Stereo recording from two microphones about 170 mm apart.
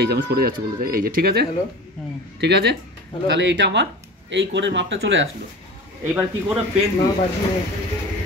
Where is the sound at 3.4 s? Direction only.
90° right.